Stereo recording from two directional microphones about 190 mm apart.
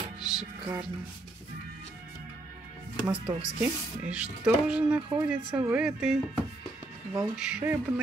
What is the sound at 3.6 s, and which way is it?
Speech, 5° right (ahead or behind).